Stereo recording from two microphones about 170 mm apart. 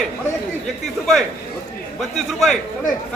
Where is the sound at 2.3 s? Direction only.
Centre (ahead or behind).